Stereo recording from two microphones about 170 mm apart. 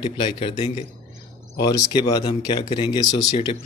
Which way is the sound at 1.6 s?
25° left (ahead or behind).